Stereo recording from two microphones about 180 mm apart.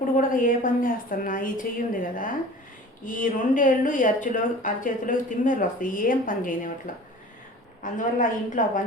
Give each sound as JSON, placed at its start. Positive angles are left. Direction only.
{"t": 0.2, "sound": "speech", "side_deg": 50}